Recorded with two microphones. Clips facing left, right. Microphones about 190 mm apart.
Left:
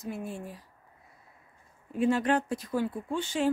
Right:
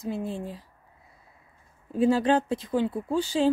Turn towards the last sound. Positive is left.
turn(degrees=-35)  # may be behind; listen again after turning